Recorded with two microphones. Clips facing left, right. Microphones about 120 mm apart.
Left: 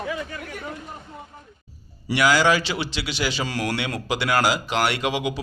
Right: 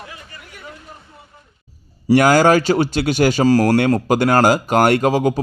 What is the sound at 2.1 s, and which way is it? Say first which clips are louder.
Speech: right 7 dB; 45° right (ahead or behind).